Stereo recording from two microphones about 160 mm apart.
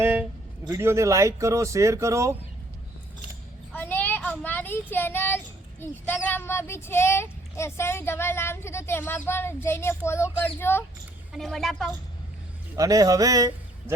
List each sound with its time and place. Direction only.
0.0 s a sound: 10° right (ahead or behind)
0.6 s speech: 20° right (ahead or behind)
3.8 s child singing: 10° left (ahead or behind)
5.8 s speech: 10° left (ahead or behind)
11.3 s a woman's voice: centre (ahead or behind)
12.7 s a man's voice: 20° right (ahead or behind)